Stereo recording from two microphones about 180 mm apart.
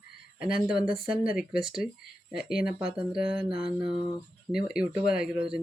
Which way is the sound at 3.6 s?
30° right (ahead or behind).